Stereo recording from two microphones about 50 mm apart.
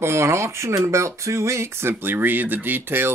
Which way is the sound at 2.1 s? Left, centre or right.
Right.